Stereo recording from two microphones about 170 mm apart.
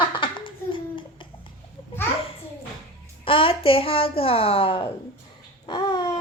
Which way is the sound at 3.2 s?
30° left (ahead or behind).